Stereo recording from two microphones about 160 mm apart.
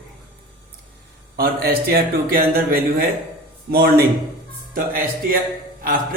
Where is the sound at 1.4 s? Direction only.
70° right (ahead or behind).